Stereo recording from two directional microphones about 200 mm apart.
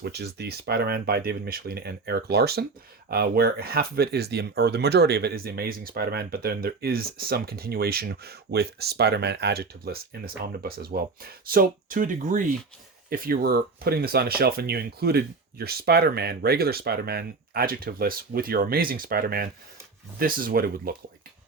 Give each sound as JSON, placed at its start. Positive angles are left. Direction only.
{"t": 0.0, "sound": "speech", "side_deg": -55}